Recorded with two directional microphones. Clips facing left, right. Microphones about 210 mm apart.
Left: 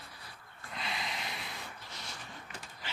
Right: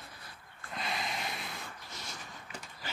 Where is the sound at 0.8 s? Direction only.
45° right (ahead or behind).